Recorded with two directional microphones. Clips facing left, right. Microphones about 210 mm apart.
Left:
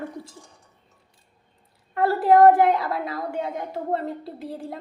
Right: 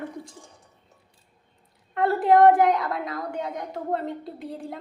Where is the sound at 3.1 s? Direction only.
25° left (ahead or behind).